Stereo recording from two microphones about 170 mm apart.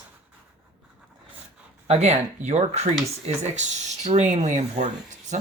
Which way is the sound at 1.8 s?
40° right (ahead or behind).